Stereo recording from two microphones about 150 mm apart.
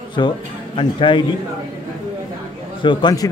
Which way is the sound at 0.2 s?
30° left (ahead or behind).